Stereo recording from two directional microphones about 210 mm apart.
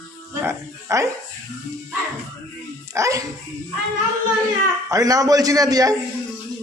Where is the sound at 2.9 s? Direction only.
15° right (ahead or behind).